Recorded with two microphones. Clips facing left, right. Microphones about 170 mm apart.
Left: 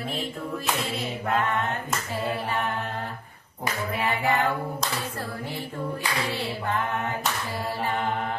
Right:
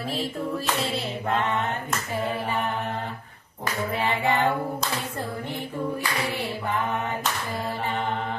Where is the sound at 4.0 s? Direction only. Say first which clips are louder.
Right 1 dB; 25° right (ahead or behind).